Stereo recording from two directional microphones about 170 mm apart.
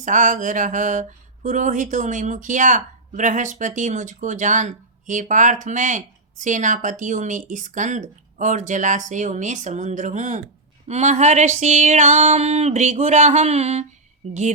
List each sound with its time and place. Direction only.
0.0 s speech: 50° right (ahead or behind)